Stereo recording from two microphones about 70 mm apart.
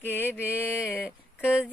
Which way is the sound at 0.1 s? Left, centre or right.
Left.